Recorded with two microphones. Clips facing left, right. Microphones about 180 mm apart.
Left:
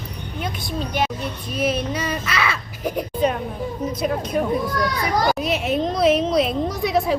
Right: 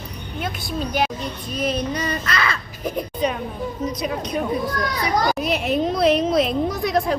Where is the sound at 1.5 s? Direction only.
5° left (ahead or behind).